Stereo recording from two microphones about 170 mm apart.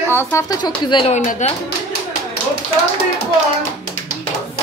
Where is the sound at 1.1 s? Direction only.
45° left (ahead or behind).